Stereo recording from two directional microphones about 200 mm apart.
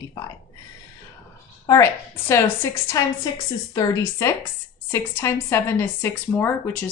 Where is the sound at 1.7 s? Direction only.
15° left (ahead or behind).